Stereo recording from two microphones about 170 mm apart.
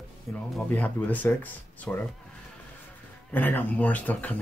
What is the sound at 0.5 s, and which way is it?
Speech, 10° left (ahead or behind).